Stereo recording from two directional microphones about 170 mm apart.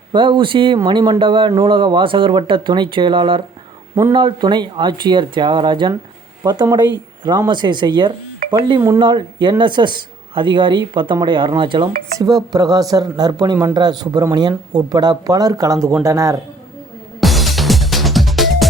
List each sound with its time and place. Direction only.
0.1 s speech: 30° right (ahead or behind)
17.2 s music: centre (ahead or behind)